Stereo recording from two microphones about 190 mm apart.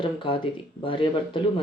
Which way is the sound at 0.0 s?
25° left (ahead or behind).